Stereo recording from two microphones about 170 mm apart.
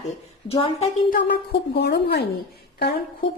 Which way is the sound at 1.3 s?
75° left (ahead or behind).